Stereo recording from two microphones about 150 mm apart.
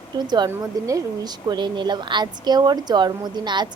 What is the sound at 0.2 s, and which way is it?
A woman's voice, 30° right (ahead or behind).